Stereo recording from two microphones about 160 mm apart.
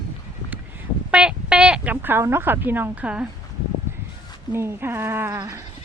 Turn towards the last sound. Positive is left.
turn(degrees=-15)  # may be behind; listen again after turning